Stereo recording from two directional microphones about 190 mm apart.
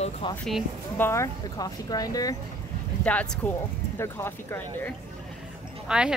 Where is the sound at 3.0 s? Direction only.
5° left (ahead or behind).